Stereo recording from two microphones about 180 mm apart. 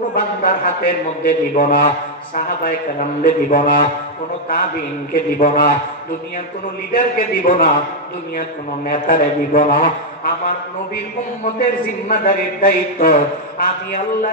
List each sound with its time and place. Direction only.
0.1 s a man's voice: 50° left (ahead or behind)
5.1 s a man's voice: 50° left (ahead or behind)
6.9 s a man's voice: 50° left (ahead or behind)
12.1 s a man's voice: 50° left (ahead or behind)